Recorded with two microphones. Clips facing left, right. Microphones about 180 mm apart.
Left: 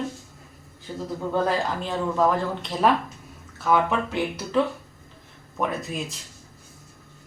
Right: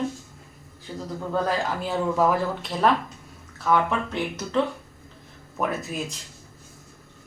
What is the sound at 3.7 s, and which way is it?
Speech, 5° left (ahead or behind).